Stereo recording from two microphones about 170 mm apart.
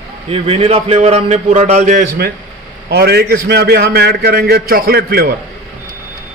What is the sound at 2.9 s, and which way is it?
A man's voice, 70° right (ahead or behind).